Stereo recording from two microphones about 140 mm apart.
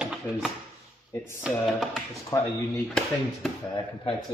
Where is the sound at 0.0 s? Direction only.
5° right (ahead or behind).